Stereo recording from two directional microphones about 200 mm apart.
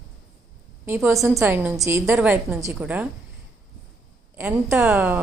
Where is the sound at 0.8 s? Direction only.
10° right (ahead or behind).